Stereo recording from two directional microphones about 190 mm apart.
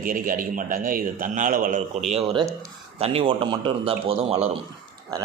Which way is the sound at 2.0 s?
30° right (ahead or behind).